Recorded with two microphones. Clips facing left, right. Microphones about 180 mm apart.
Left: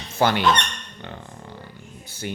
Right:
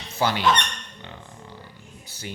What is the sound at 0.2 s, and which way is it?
Speech, 60° left (ahead or behind).